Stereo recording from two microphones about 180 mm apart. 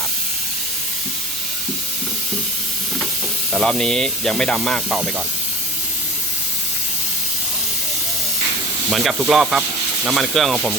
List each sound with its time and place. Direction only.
3.5 s speech: 5° left (ahead or behind)
8.9 s speech: centre (ahead or behind)